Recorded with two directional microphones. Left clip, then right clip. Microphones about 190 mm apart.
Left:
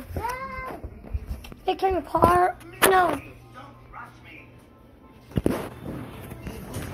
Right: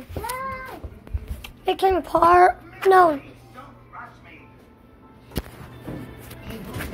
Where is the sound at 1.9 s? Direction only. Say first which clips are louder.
Right 4 dB; 15° right (ahead or behind).